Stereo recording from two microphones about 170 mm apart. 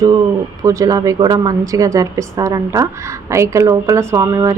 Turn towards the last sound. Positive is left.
turn(degrees=-20)  # may be behind; listen again after turning